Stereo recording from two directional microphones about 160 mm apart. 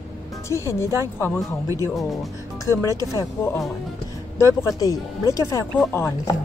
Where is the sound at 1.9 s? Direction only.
Centre (ahead or behind).